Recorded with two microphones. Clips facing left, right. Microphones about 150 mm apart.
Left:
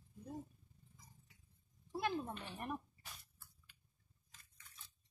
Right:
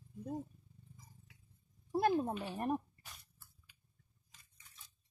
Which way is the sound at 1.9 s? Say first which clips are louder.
Right 8 dB; 45° right (ahead or behind).